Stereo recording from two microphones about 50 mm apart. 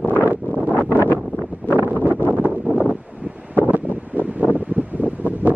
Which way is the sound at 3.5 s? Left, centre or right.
Right.